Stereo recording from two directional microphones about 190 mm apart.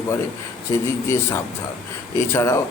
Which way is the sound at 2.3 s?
15° left (ahead or behind).